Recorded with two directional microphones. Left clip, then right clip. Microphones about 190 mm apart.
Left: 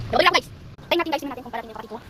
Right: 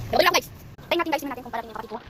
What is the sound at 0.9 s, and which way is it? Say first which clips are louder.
Speech: left 1 dB; centre (ahead or behind).